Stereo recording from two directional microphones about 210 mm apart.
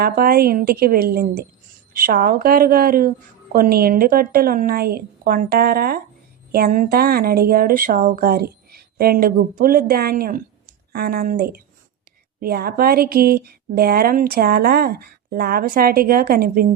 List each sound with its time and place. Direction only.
0.0 s speech: 45° right (ahead or behind)